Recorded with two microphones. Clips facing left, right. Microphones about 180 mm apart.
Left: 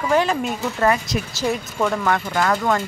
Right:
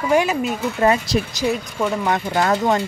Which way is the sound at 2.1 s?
20° right (ahead or behind).